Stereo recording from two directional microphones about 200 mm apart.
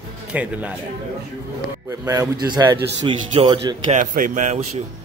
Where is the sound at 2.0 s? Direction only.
20° right (ahead or behind).